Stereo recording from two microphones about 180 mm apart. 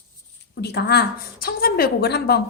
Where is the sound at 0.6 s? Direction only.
65° left (ahead or behind).